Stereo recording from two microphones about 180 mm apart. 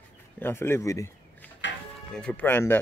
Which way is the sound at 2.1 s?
5° left (ahead or behind).